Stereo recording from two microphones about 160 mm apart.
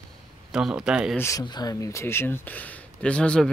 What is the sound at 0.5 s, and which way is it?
Speech, 5° right (ahead or behind).